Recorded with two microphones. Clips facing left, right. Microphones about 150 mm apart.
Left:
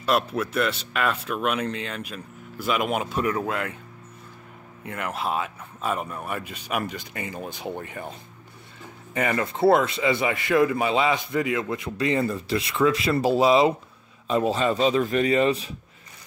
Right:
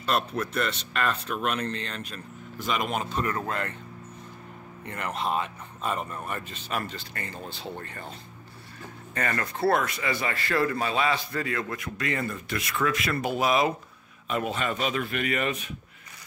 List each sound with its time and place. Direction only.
0.0 s speech: 10° left (ahead or behind)
4.8 s speech: 5° left (ahead or behind)
9.1 s a man's voice: 20° left (ahead or behind)